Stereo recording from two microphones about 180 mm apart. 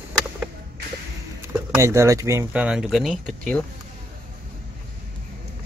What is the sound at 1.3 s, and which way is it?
Speech, 15° right (ahead or behind).